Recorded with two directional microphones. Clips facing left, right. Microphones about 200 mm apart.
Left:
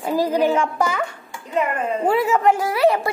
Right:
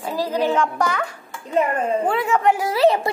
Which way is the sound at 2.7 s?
25° right (ahead or behind).